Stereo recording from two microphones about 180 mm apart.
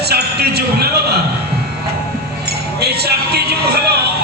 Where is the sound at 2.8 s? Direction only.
65° right (ahead or behind).